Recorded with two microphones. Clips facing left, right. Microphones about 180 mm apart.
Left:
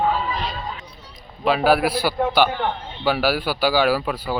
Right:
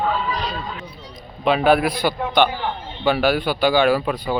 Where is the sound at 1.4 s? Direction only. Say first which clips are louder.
Right 1 dB; 5° left (ahead or behind).